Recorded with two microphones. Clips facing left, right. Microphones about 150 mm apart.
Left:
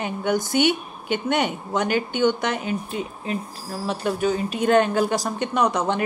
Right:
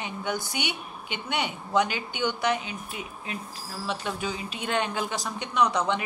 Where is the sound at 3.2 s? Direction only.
35° left (ahead or behind).